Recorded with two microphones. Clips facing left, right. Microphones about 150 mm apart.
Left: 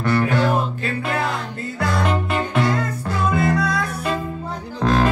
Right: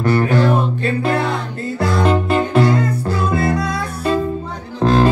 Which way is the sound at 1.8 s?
35° right (ahead or behind).